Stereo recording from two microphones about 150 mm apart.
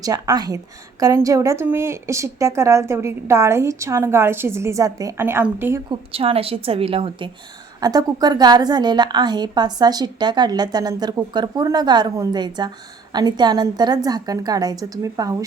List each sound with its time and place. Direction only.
0.0 s a woman's voice: 25° right (ahead or behind)
5.9 s a woman's voice: 35° right (ahead or behind)
7.8 s a woman's voice: 25° right (ahead or behind)